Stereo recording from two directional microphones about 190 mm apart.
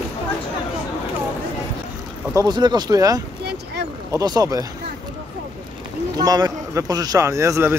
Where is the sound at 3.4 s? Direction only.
60° right (ahead or behind).